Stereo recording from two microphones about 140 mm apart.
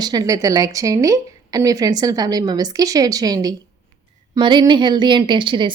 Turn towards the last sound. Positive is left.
turn(degrees=-35)  # may be behind; listen again after turning